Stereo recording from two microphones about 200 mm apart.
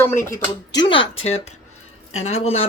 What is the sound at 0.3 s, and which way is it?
Speech, 20° left (ahead or behind).